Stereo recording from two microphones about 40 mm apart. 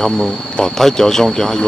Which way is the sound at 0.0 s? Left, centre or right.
Centre.